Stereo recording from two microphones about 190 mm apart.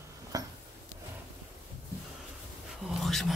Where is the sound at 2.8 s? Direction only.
Centre (ahead or behind).